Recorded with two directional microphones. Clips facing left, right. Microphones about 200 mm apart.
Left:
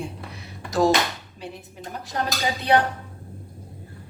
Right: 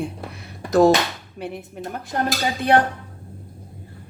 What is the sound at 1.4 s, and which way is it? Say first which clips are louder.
Speech: right 7 dB; 60° right (ahead or behind).